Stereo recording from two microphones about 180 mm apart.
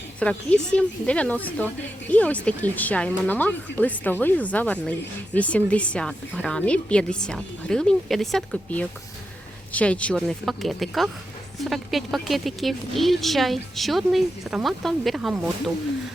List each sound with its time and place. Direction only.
0.2 s a woman's voice: 5° left (ahead or behind)